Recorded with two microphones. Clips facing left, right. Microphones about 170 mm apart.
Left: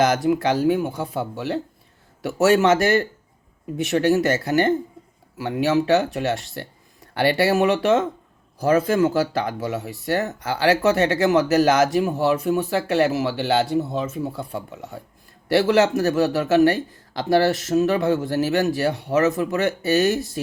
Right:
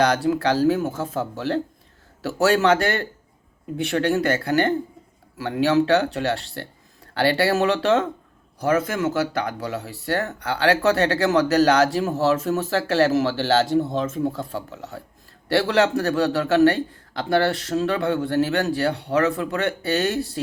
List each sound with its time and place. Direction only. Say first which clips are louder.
0.0 s speech: left 1 dB; 20° left (ahead or behind)
8.6 s speech: left 3 dB; 30° left (ahead or behind)